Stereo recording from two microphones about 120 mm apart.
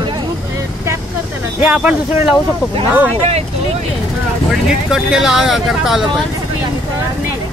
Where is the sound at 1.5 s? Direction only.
10° right (ahead or behind).